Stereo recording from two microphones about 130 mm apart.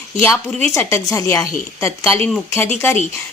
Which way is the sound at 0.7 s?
20° left (ahead or behind).